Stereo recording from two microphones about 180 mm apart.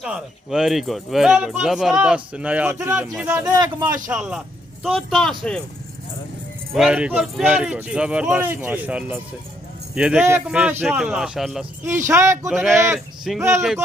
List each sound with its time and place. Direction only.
0.0 s speech: 5° right (ahead or behind)
3.4 s speech: 25° right (ahead or behind)
4.1 s a man's voice: 5° right (ahead or behind)
6.7 s speech: 5° right (ahead or behind)
11.9 s speech: 15° right (ahead or behind)
12.5 s speech: centre (ahead or behind)